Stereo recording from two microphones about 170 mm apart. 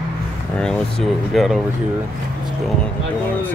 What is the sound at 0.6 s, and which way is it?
Speech, 5° left (ahead or behind).